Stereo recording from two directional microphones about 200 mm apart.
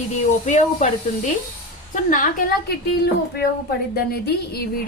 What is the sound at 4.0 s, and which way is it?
Speech, 50° left (ahead or behind).